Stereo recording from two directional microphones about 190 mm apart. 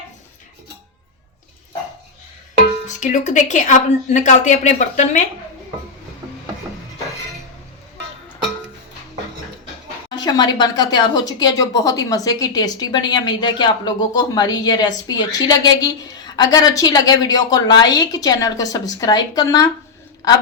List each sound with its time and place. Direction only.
2.8 s speech: 40° left (ahead or behind)
10.2 s speech: 20° left (ahead or behind)